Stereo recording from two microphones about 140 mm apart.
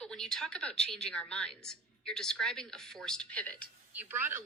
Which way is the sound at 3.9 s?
10° right (ahead or behind).